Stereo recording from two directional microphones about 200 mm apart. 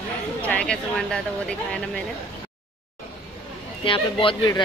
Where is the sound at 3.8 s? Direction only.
25° left (ahead or behind).